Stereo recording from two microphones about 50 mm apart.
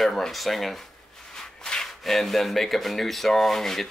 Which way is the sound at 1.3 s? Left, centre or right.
Centre.